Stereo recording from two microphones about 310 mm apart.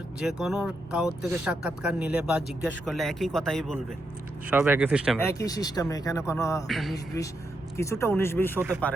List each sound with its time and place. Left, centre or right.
0.2 s speech: centre
5.2 s speech: centre
8.5 s speech: centre